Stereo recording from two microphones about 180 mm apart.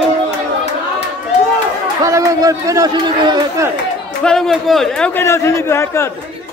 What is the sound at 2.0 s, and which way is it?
A man's voice, 20° right (ahead or behind).